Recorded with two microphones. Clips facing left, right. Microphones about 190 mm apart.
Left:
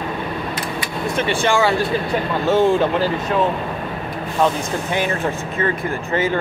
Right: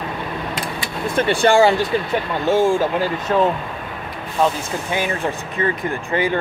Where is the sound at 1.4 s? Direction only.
30° right (ahead or behind).